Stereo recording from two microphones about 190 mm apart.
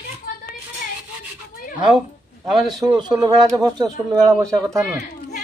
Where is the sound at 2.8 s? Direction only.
25° right (ahead or behind).